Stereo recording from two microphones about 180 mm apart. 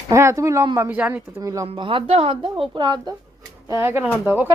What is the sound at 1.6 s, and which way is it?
A woman's voice, 30° right (ahead or behind).